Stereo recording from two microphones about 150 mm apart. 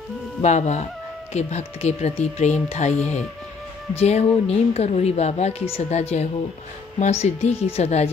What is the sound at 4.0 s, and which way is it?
Speech, 45° left (ahead or behind).